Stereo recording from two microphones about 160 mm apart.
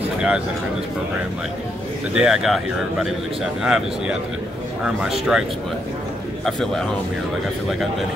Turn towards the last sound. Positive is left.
turn(degrees=5)  # may be behind; listen again after turning